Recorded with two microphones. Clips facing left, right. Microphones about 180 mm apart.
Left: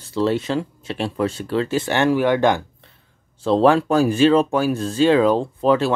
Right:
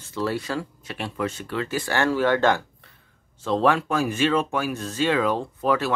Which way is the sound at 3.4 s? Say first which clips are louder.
Left 6 dB; 30° left (ahead or behind).